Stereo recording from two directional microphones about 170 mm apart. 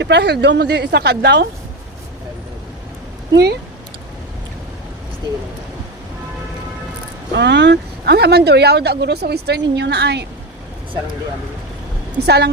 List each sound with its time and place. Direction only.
0.0 s speech: 80° right
3.3 s speech: 75° right (ahead or behind)
7.3 s speech: 90° right
12.2 s speech: 75° right (ahead or behind)